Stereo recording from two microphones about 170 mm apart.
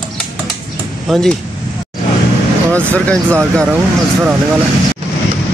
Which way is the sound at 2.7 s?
10° left (ahead or behind).